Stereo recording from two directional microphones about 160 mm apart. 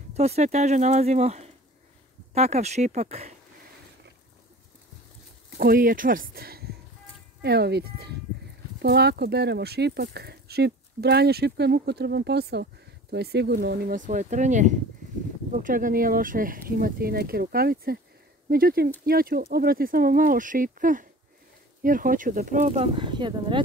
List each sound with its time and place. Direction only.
0.1 s speech: 40° right (ahead or behind)
5.6 s speech: 65° right (ahead or behind); by 23.6 s 30° right (ahead or behind)